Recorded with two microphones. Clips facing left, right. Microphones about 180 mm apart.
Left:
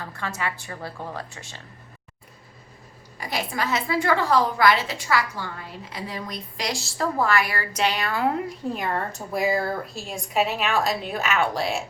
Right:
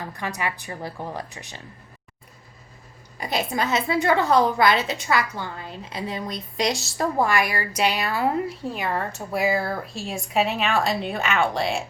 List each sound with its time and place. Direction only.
0.1 s a woman's voice: 15° right (ahead or behind)
3.2 s a woman's voice: 20° right (ahead or behind); by 11.8 s centre (ahead or behind)